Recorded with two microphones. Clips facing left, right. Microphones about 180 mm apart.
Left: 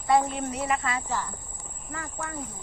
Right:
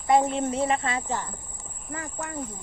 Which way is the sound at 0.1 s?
25° right (ahead or behind).